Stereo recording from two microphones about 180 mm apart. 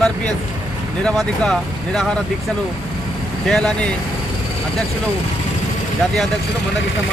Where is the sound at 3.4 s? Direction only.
5° left (ahead or behind).